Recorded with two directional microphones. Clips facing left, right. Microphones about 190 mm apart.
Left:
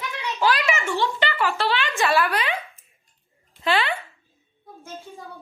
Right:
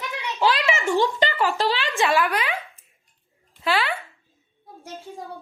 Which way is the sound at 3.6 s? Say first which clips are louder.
Left 1 dB; 5° right (ahead or behind).